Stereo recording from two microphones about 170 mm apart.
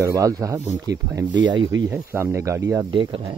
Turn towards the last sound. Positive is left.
turn(degrees=-30)  # may be behind; listen again after turning